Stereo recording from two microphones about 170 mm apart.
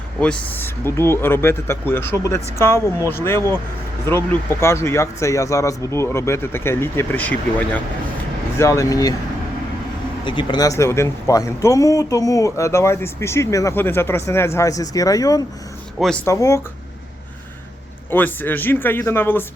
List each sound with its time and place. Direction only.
0.2 s speech: 10° left (ahead or behind)
10.2 s speech: 25° left (ahead or behind)
16.0 s speech: 5° left (ahead or behind)
16.2 s speech: 20° left (ahead or behind)
18.1 s speech: 10° left (ahead or behind)